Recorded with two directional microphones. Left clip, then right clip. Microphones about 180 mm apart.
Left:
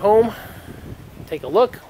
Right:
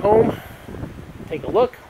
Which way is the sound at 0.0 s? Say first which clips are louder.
Left 1 dB; 25° left (ahead or behind).